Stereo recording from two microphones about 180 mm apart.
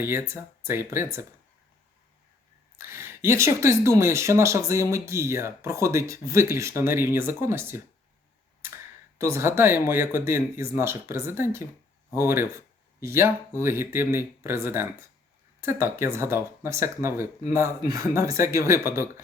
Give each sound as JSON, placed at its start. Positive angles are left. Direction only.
{"t": 0.0, "sound": "speech", "side_deg": -10}
{"t": 2.7, "sound": "speech", "side_deg": -15}
{"t": 9.1, "sound": "speech", "side_deg": -15}